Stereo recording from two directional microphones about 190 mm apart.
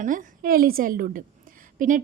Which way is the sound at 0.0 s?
45° right (ahead or behind).